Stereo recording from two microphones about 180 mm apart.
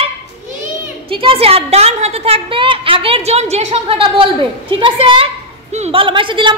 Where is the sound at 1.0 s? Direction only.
30° right (ahead or behind).